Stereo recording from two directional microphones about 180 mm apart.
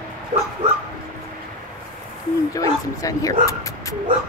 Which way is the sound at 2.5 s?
20° left (ahead or behind).